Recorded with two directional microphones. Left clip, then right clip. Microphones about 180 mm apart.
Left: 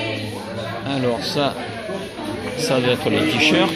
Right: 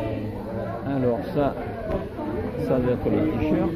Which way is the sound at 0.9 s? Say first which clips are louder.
Left 3 dB; 5° left (ahead or behind).